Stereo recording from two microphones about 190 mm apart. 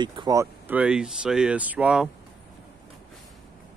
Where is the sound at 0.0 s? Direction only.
25° right (ahead or behind); by 2.0 s 5° right (ahead or behind).